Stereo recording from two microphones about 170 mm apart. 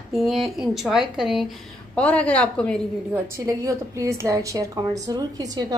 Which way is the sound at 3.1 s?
15° right (ahead or behind).